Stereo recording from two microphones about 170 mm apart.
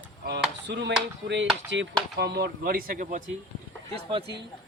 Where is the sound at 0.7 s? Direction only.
90° right.